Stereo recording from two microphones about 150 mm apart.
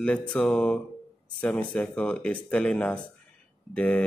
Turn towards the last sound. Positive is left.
turn(degrees=10)  # may be behind; listen again after turning